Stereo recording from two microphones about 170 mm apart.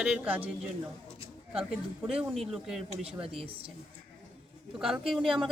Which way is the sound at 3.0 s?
35° right (ahead or behind).